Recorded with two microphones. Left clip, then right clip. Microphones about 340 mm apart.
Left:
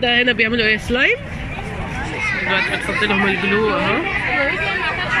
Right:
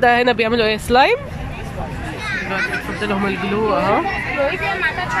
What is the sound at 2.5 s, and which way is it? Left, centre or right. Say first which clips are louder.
Speech: left 3 dB; centre.